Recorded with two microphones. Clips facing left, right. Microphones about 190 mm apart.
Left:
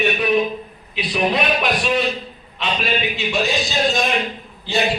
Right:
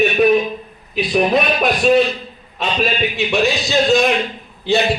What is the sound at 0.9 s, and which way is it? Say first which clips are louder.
Speech: right 5 dB; 45° right (ahead or behind).